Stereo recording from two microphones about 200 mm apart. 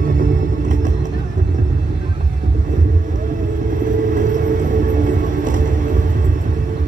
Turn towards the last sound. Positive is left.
turn(degrees=-40)  # may be behind; listen again after turning